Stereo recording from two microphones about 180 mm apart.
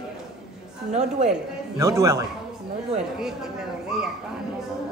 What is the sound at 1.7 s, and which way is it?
Speech, 15° right (ahead or behind).